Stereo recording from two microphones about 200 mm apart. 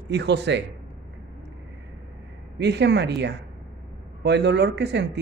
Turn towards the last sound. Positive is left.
turn(degrees=-55)  # may be behind; listen again after turning